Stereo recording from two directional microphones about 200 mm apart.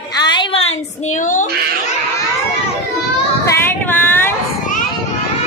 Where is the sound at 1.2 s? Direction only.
40° left (ahead or behind).